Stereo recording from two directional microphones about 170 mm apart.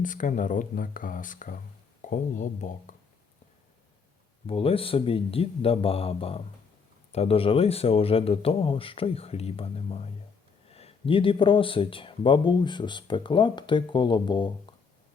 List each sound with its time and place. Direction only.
0.0 s speech: 50° left (ahead or behind)
4.4 s speech: 35° left (ahead or behind)